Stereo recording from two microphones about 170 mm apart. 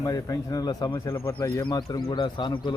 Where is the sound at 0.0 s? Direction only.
20° left (ahead or behind).